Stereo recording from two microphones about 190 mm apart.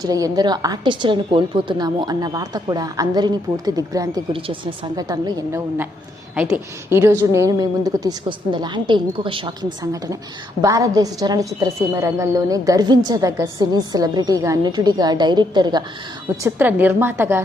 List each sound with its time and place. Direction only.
0.0 s a woman's voice: 20° right (ahead or behind)
9.8 s a woman's voice: 15° right (ahead or behind)
16.4 s a woman's voice: 10° right (ahead or behind)